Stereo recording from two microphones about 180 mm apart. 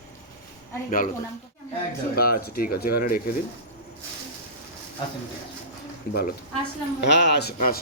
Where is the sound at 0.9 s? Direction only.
50° left (ahead or behind).